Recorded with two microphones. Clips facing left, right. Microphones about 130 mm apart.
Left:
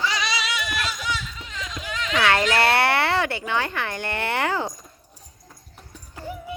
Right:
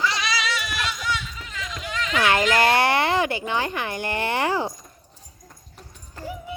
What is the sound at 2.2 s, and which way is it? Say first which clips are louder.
Speech: right 1 dB; 15° right (ahead or behind).